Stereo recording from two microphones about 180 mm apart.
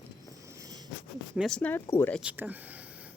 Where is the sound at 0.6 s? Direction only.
20° right (ahead or behind).